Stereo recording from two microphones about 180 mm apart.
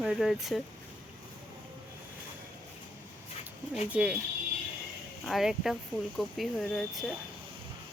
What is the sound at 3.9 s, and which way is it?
Speech, 5° right (ahead or behind).